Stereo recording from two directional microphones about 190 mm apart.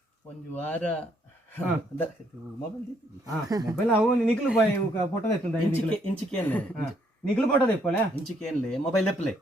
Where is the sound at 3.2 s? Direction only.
20° right (ahead or behind).